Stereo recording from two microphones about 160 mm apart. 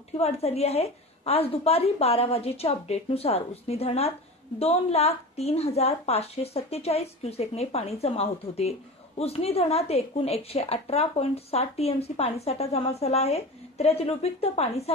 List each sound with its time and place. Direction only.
0.2 s speech: 40° left (ahead or behind)